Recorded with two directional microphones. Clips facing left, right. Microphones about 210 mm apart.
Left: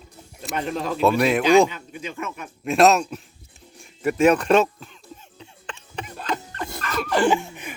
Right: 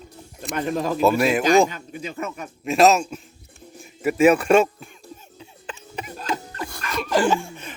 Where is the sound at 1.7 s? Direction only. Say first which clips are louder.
Right 1 dB; 40° right (ahead or behind).